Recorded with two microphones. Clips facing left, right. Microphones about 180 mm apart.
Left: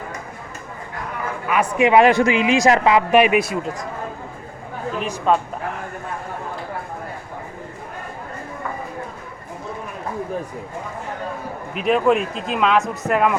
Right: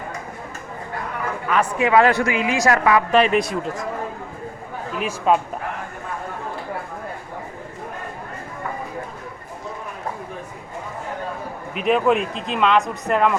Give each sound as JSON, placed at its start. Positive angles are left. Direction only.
{"t": 1.5, "sound": "a man's voice", "side_deg": 10}
{"t": 1.9, "sound": "speech", "side_deg": 20}
{"t": 4.9, "sound": "speech", "side_deg": -5}
{"t": 11.7, "sound": "speech", "side_deg": 0}